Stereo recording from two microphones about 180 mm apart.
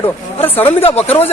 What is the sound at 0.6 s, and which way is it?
Speech, 35° left (ahead or behind).